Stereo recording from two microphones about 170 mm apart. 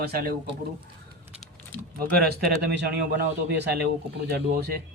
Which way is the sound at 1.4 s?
10° left (ahead or behind).